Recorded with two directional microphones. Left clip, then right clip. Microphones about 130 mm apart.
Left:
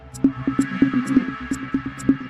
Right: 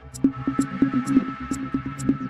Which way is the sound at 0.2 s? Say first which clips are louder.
Left 3 dB; centre (ahead or behind).